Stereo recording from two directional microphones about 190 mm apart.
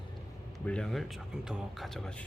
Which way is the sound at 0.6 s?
5° left (ahead or behind).